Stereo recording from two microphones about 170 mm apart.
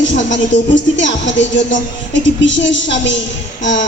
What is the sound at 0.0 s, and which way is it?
A woman's voice, 90° left.